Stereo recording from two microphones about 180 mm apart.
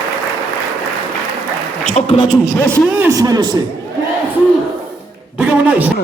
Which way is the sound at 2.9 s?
15° right (ahead or behind).